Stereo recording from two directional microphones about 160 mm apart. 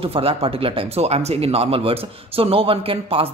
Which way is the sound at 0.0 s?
35° right (ahead or behind).